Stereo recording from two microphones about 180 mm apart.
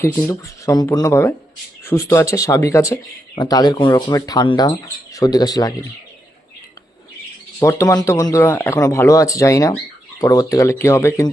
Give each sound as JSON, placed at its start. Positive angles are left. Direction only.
{"t": 0.0, "sound": "speech", "side_deg": 15}
{"t": 7.6, "sound": "speech", "side_deg": 15}